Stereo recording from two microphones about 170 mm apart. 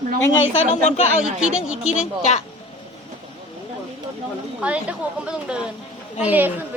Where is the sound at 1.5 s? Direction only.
5° right (ahead or behind).